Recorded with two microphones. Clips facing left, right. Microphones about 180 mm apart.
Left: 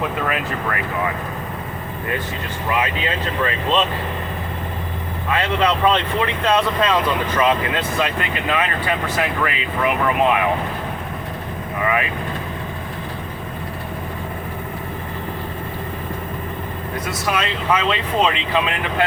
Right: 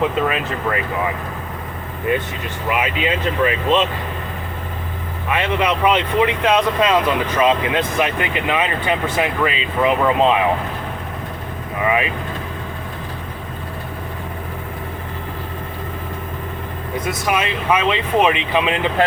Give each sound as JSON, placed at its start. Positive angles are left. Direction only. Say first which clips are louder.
{"t": 0.0, "sound": "speech", "louder": "right 4 dB", "side_deg": -20}
{"t": 2.6, "sound": "speech", "louder": "right 2 dB", "side_deg": -15}
{"t": 5.3, "sound": "speech", "louder": "even", "side_deg": -15}
{"t": 11.9, "sound": "speech", "louder": "right 3 dB", "side_deg": -20}
{"t": 17.1, "sound": "speech", "louder": "right 2 dB", "side_deg": -20}